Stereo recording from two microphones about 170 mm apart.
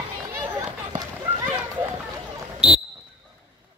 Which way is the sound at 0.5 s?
20° right (ahead or behind).